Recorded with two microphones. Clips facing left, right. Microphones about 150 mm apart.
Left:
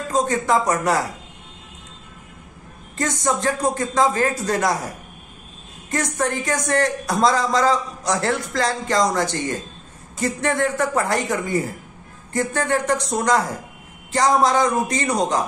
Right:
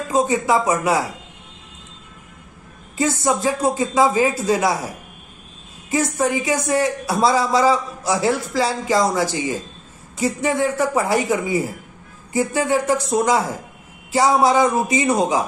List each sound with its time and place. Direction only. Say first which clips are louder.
0.1 s a man's voice: right 2 dB; 10° right (ahead or behind)
3.0 s a man's voice: right 3 dB; 5° right (ahead or behind)